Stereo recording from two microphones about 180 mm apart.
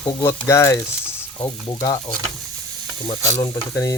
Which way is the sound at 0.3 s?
15° left (ahead or behind).